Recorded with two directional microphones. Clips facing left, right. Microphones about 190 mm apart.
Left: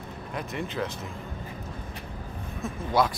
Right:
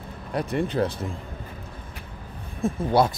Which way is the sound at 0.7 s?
35° right (ahead or behind).